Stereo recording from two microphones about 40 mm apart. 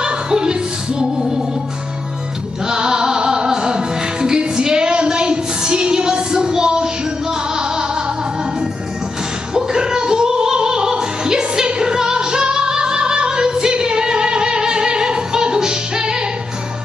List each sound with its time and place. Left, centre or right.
0.0 s music: centre
2.6 s music: centre
9.5 s music: centre